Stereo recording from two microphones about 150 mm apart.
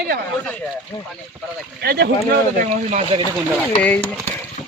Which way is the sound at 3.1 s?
45° right (ahead or behind).